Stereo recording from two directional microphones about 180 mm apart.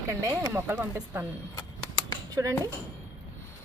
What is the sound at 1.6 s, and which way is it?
Typewriter, 20° left (ahead or behind).